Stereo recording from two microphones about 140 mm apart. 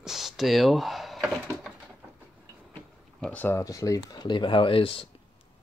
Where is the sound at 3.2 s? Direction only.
10° left (ahead or behind); by 5.0 s 40° left (ahead or behind).